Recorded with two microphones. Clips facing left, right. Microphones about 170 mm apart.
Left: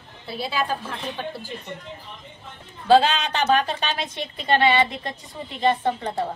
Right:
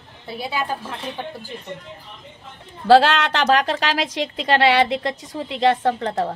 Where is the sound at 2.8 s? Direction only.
85° right.